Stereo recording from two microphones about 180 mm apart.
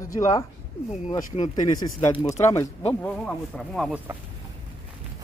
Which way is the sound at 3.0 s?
5° left (ahead or behind).